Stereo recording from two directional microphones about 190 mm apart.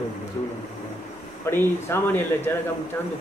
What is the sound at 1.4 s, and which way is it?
Speech, 10° left (ahead or behind).